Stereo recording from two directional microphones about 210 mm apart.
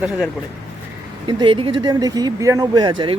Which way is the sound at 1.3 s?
25° right (ahead or behind).